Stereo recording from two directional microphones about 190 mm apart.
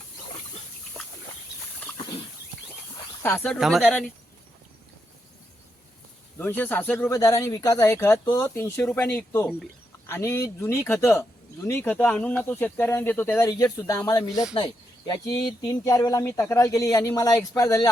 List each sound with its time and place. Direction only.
3.2 s speech: 10° left (ahead or behind)
6.4 s speech: 10° left (ahead or behind)